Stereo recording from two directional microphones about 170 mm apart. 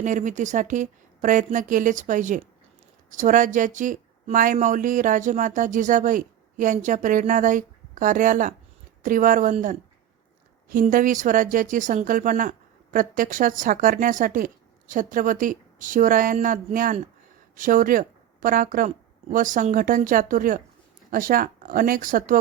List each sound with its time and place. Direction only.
0.0 s speech: 45° right (ahead or behind)